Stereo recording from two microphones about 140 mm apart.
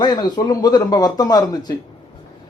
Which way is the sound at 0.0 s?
30° left (ahead or behind).